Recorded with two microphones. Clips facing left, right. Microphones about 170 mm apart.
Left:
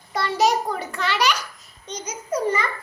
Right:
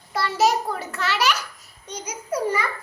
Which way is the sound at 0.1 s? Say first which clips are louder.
Even; 5° right (ahead or behind).